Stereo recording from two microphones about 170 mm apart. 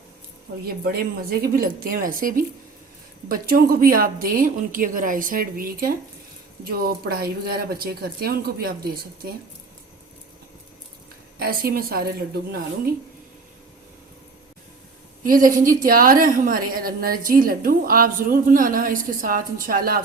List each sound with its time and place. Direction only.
0.6 s a woman's voice: 60° right (ahead or behind)
11.3 s a woman's voice: 60° right (ahead or behind)
15.3 s a woman's voice: 55° right (ahead or behind)